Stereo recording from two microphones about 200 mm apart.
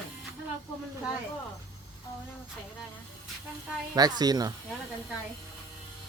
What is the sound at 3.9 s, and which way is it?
Speech, 20° right (ahead or behind).